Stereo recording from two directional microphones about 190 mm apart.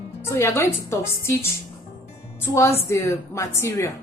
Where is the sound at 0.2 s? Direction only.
15° left (ahead or behind).